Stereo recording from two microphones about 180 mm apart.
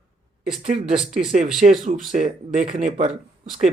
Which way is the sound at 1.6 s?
45° right (ahead or behind).